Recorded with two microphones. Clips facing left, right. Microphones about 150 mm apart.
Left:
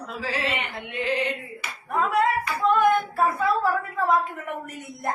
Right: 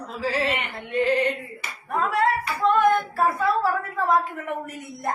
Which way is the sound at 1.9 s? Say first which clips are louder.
Even; centre (ahead or behind).